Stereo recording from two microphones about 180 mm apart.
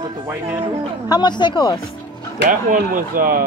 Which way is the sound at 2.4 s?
45° right (ahead or behind).